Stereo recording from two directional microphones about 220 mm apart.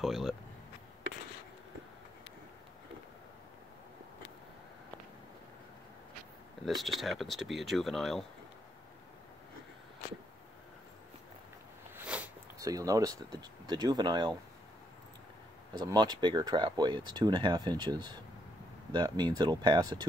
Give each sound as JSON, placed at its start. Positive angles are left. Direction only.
{"t": 0.0, "sound": "speech", "side_deg": 0}
{"t": 6.6, "sound": "speech", "side_deg": 0}
{"t": 11.9, "sound": "speech", "side_deg": -5}
{"t": 15.8, "sound": "speech", "side_deg": -20}